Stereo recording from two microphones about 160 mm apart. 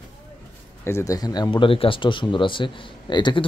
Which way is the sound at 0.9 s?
20° left (ahead or behind).